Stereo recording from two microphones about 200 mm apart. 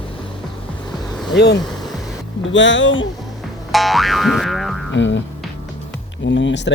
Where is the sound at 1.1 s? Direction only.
Centre (ahead or behind).